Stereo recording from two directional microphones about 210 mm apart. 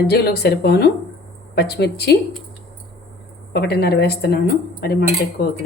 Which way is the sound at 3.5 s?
50° left (ahead or behind).